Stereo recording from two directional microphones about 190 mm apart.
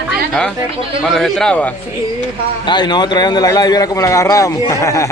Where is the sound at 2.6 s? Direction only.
25° left (ahead or behind).